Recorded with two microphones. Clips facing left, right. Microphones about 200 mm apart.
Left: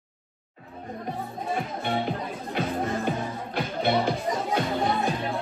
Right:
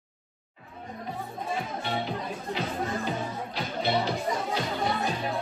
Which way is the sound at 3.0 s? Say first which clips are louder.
Left 3 dB; 55° left (ahead or behind).